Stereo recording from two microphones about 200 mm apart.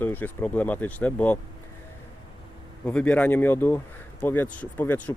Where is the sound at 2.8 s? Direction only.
5° left (ahead or behind).